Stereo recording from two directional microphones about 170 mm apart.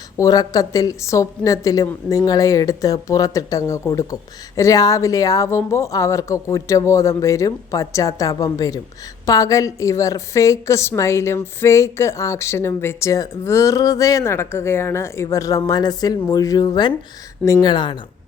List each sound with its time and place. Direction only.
0.2 s a woman's voice: 20° left (ahead or behind)